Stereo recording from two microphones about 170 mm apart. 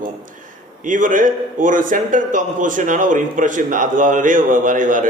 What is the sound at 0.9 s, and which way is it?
A man's voice, 50° right (ahead or behind).